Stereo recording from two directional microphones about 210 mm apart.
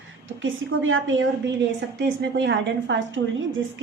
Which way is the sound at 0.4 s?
70° right (ahead or behind).